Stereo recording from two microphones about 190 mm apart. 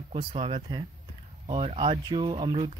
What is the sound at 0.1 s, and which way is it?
Speech, 30° right (ahead or behind).